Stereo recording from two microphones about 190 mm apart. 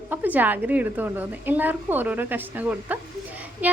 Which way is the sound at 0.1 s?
10° right (ahead or behind).